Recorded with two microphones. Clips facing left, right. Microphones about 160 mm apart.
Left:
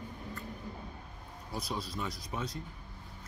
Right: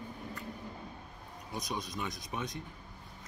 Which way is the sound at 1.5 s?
20° right (ahead or behind).